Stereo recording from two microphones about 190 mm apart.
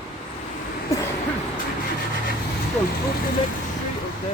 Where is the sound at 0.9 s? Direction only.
15° left (ahead or behind).